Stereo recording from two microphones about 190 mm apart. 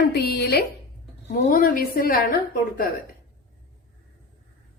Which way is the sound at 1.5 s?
50° left (ahead or behind).